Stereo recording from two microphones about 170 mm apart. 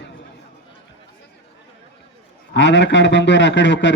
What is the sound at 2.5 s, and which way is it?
A man's voice, 90° left.